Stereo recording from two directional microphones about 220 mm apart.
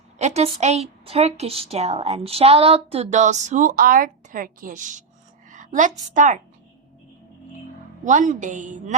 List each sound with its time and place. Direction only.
0.2 s a woman's voice: 30° right (ahead or behind)
8.0 s a woman's voice: 35° right (ahead or behind)